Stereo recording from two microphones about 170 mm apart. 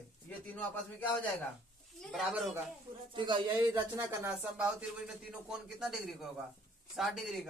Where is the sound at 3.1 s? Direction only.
30° right (ahead or behind).